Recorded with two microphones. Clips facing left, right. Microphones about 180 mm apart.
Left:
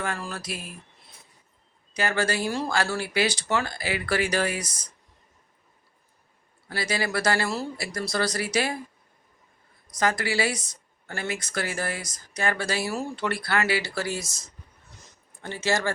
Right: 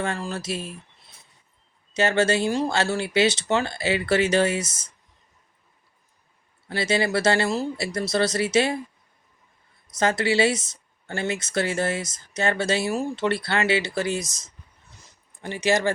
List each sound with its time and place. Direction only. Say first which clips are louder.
0.0 s speech: right 4 dB; 25° right (ahead or behind)
1.9 s speech: right 5 dB; 25° right (ahead or behind)
6.7 s speech: right 5 dB; 25° right (ahead or behind)
10.0 s speech: right 4 dB; 25° right (ahead or behind)